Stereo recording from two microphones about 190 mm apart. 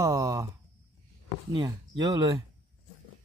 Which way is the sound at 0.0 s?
15° right (ahead or behind).